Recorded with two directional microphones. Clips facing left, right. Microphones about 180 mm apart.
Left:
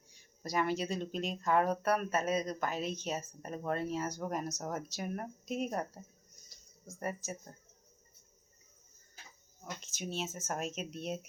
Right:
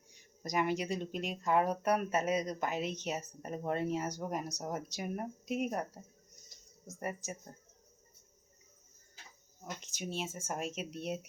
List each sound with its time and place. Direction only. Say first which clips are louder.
0.4 s speech: even; 15° right (ahead or behind)
6.5 s a sound: right 1 dB; 15° right (ahead or behind)
9.8 s speech: left 1 dB; 10° right (ahead or behind)